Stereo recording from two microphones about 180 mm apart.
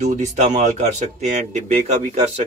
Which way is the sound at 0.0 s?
40° right (ahead or behind).